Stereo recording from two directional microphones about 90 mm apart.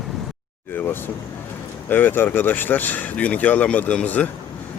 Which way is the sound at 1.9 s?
20° left (ahead or behind).